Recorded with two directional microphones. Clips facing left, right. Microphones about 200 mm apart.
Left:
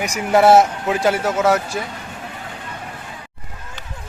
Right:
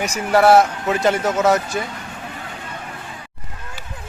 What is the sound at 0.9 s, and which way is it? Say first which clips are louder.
Speech: even; 5° left (ahead or behind).